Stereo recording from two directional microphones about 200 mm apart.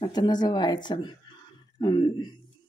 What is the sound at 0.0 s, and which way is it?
Speech, 20° left (ahead or behind).